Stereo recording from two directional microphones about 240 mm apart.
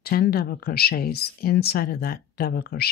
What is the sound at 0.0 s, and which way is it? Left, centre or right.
Speech, left.